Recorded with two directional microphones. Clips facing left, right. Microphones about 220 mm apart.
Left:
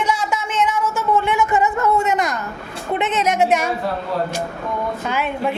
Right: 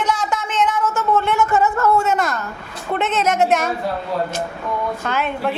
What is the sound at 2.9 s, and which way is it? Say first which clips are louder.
Speech: even; 15° left (ahead or behind).